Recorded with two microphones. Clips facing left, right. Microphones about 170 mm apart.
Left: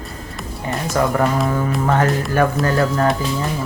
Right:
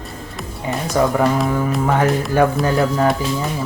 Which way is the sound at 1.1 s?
5° right (ahead or behind).